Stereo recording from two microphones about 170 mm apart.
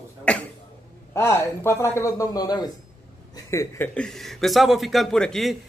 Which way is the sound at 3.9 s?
5° left (ahead or behind).